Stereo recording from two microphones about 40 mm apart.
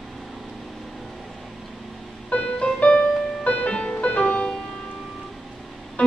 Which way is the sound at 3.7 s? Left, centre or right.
Left.